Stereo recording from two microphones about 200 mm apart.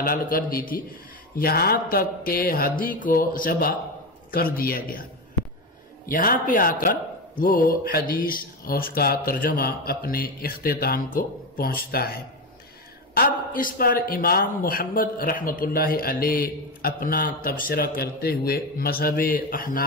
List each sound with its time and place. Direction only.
0.0 s a man's voice: 45° left (ahead or behind)
6.0 s a man's voice: 45° left (ahead or behind)